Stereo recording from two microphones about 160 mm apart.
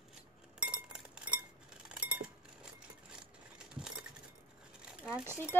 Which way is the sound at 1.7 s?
5° right (ahead or behind).